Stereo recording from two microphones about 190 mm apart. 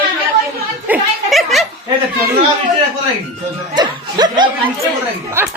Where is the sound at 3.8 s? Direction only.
20° right (ahead or behind).